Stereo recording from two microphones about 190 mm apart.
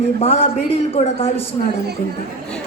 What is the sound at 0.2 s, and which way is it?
A man's voice, 30° left (ahead or behind).